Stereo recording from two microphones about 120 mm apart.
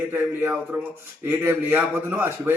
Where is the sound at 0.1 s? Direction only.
15° right (ahead or behind).